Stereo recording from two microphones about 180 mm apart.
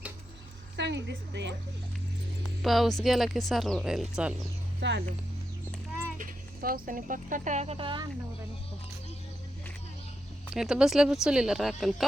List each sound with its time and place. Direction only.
0.8 s speech: 75° right (ahead or behind)
2.6 s speech: centre (ahead or behind)
4.8 s speech: 90° right
6.1 s speech: 50° right (ahead or behind); by 8.0 s 30° right (ahead or behind)
10.5 s speech: 5° right (ahead or behind)